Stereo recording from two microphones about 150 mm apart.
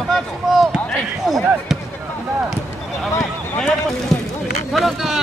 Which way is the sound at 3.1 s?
5° left (ahead or behind).